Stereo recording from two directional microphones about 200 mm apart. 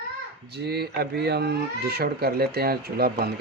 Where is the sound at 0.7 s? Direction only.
55° right (ahead or behind).